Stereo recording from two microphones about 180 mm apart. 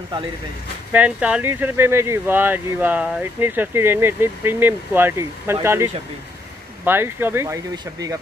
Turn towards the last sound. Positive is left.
turn(degrees=-10)  # may be behind; listen again after turning